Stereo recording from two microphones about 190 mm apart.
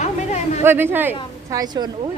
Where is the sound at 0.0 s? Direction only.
35° left (ahead or behind).